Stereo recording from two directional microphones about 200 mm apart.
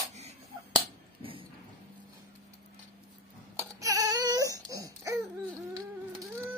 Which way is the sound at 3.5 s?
15° right (ahead or behind).